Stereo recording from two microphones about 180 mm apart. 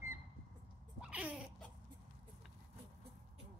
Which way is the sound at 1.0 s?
5° right (ahead or behind).